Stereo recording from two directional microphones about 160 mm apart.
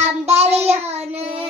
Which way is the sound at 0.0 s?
40° right (ahead or behind).